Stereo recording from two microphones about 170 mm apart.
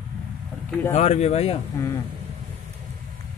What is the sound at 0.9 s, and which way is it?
Speech, 40° left (ahead or behind).